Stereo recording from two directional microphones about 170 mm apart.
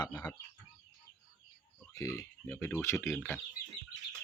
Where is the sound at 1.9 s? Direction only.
20° left (ahead or behind).